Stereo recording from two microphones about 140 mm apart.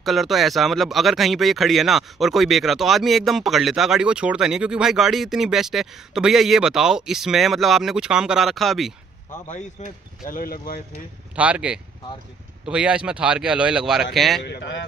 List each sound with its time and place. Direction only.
0.0 s speech: centre (ahead or behind)
9.5 s speech: 60° left (ahead or behind); by 10.8 s 90° left
11.3 s speech: 10° right (ahead or behind)